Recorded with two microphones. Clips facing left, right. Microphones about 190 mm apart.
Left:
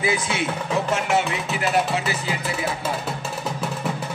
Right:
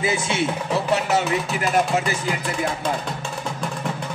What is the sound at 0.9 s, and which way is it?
Music, 40° right (ahead or behind).